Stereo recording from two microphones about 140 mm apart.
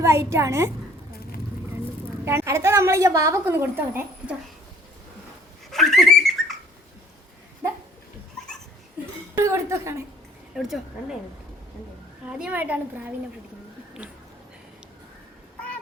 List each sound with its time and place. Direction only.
0.0 s a woman's voice: 20° right (ahead or behind)
2.2 s a woman's voice: 20° right (ahead or behind)
5.7 s bird: centre (ahead or behind)
7.6 s a sound: 15° right (ahead or behind)
9.4 s a woman's voice: 20° right (ahead or behind)
10.5 s speech: 5° right (ahead or behind)
12.2 s a woman's voice: 10° right (ahead or behind)